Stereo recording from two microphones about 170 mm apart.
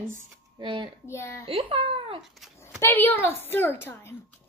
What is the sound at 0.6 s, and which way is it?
Speech, 30° right (ahead or behind).